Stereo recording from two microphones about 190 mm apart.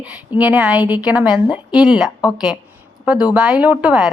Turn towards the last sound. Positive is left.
turn(degrees=-5)  # may be behind; listen again after turning